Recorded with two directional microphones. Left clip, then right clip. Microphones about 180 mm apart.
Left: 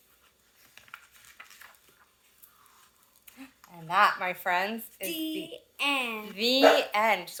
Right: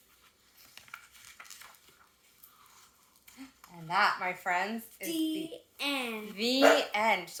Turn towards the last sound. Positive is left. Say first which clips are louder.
# left 3 dB
turn(degrees=10)  # may be behind; listen again after turning